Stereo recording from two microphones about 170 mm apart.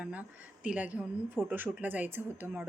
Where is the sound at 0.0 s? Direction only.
10° right (ahead or behind).